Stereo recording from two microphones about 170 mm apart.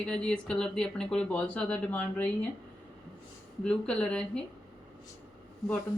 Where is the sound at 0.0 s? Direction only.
5° left (ahead or behind).